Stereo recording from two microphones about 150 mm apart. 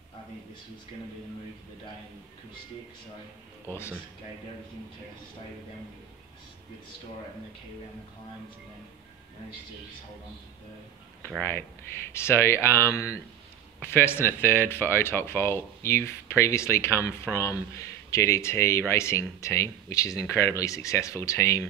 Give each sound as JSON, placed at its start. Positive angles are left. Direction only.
{"t": 3.6, "sound": "speech", "side_deg": 15}
{"t": 11.2, "sound": "speech", "side_deg": 10}